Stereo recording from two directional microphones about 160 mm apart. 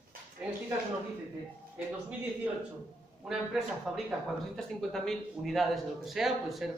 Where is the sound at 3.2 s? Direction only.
Centre (ahead or behind).